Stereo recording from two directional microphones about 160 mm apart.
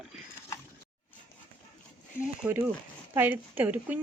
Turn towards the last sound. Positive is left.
turn(degrees=-10)  # may be behind; listen again after turning